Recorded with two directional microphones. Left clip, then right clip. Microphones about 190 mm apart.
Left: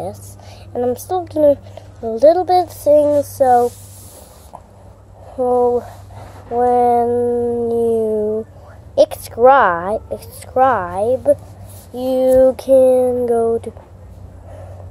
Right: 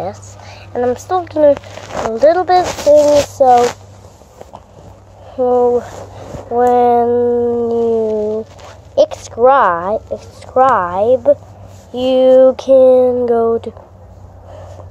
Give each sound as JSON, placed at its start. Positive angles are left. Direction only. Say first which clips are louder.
{"t": 0.0, "sound": "a woman's voice", "louder": "right 4 dB", "side_deg": 10}
{"t": 2.9, "sound": "speech", "louder": "right 4 dB", "side_deg": -10}
{"t": 5.3, "sound": "speech", "louder": "right 3 dB", "side_deg": -15}